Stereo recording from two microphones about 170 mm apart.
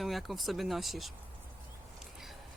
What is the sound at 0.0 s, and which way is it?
Speech, centre (ahead or behind).